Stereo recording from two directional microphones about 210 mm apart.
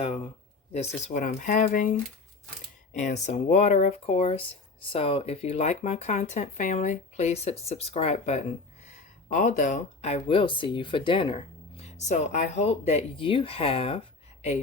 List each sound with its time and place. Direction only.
0.7 s speech: 30° left (ahead or behind)
2.9 s speech: 35° left (ahead or behind)